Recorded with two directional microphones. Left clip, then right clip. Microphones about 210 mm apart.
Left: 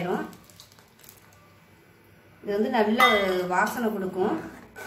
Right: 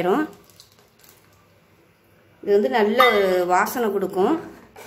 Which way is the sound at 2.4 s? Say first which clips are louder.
Right 6 dB; 50° right (ahead or behind).